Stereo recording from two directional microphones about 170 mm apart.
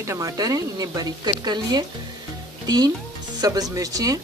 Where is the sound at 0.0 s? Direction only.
20° right (ahead or behind).